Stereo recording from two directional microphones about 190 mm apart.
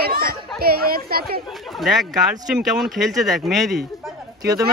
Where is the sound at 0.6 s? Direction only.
55° right (ahead or behind).